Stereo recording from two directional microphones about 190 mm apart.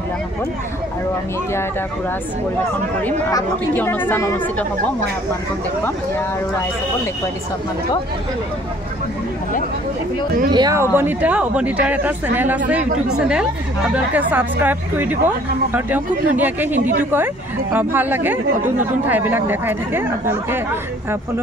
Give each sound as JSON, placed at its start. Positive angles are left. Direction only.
{"t": 3.0, "sound": "speech", "side_deg": 10}
{"t": 10.5, "sound": "speech", "side_deg": -20}
{"t": 13.9, "sound": "speech", "side_deg": -10}